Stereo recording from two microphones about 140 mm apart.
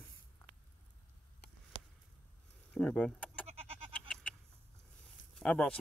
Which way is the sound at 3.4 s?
45° right (ahead or behind).